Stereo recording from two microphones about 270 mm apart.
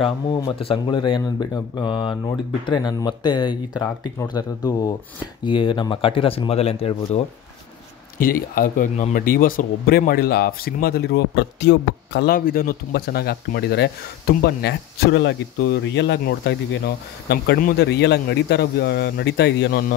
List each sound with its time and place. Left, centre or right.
0.0 s speech: centre
8.2 s speech: left